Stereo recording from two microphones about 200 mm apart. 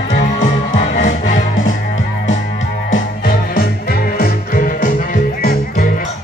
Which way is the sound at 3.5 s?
50° left (ahead or behind).